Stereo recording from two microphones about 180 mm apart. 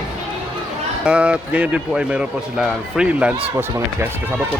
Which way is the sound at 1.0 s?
5° right (ahead or behind).